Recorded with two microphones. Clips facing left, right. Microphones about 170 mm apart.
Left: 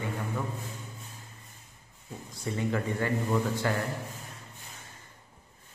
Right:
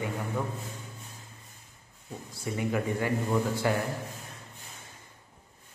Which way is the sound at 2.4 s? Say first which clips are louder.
Right 1 dB; 15° right (ahead or behind).